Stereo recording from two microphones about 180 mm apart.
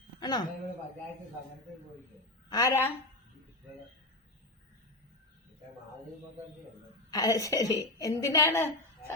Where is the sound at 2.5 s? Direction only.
20° left (ahead or behind).